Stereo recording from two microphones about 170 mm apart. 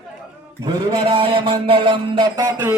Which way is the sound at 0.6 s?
25° right (ahead or behind).